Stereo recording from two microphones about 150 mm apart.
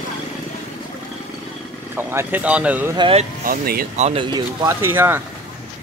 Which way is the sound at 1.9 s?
15° right (ahead or behind).